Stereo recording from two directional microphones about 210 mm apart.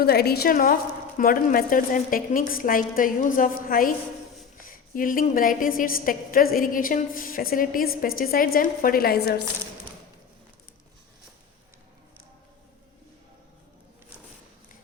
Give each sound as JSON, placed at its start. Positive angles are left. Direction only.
{"t": 0.0, "sound": "a woman's voice", "side_deg": 50}